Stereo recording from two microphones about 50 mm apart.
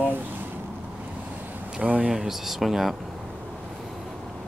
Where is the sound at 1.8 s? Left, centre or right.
Right.